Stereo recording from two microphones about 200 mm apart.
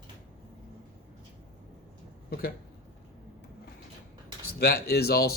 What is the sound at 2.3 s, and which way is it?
Speech, 50° left (ahead or behind).